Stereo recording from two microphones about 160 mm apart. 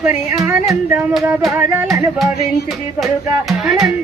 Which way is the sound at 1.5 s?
15° right (ahead or behind).